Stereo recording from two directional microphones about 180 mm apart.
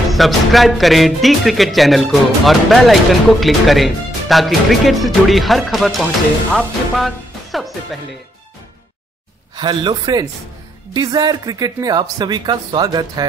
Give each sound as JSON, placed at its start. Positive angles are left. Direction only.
{"t": 0.1, "sound": "speech", "side_deg": 0}
{"t": 9.6, "sound": "speech", "side_deg": -25}